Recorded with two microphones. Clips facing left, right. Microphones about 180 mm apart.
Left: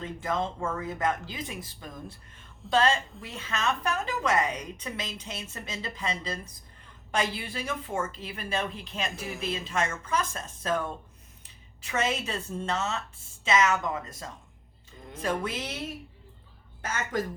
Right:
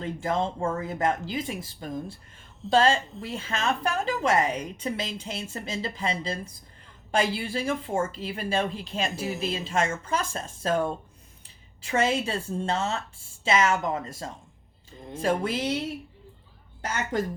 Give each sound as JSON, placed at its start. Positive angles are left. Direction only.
{"t": 0.0, "sound": "a woman's voice", "side_deg": -30}
{"t": 16.8, "sound": "a woman's voice", "side_deg": -30}